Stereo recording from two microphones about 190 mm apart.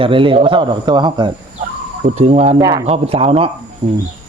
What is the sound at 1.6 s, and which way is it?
Bird, 35° right (ahead or behind).